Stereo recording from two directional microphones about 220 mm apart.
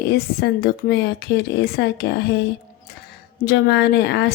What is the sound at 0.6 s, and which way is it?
Speech, 50° left (ahead or behind).